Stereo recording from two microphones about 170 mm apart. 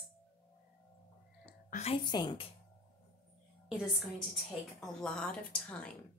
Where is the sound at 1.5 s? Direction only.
50° left (ahead or behind).